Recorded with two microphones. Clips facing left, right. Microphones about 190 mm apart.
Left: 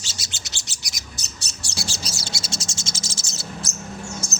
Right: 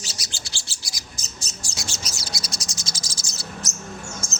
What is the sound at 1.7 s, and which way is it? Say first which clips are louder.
Cricket: left 4 dB; 30° left (ahead or behind).